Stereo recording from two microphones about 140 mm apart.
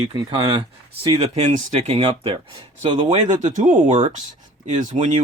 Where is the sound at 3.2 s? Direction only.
60° right (ahead or behind).